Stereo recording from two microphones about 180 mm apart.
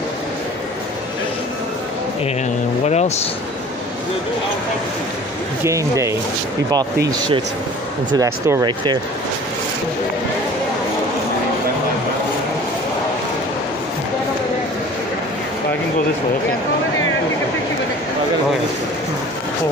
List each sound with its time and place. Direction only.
2.8 s speech: 40° left (ahead or behind)
5.6 s speech: 15° right (ahead or behind)
8.1 s speech: 15° right (ahead or behind)